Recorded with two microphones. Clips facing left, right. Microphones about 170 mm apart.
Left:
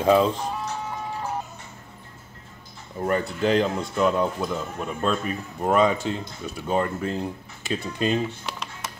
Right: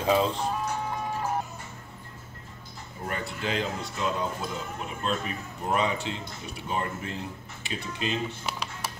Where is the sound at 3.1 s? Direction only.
45° left (ahead or behind).